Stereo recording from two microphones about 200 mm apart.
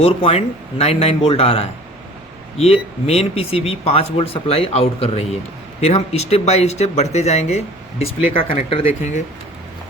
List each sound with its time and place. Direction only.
0.0 s speech: 30° left (ahead or behind)
3.1 s speech: 30° left (ahead or behind)